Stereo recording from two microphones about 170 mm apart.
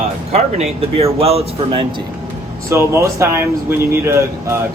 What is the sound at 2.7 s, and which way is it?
Speech, 15° right (ahead or behind).